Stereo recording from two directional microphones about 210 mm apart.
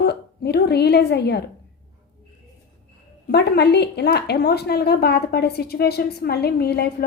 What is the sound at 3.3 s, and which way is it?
A woman's voice, 50° left (ahead or behind).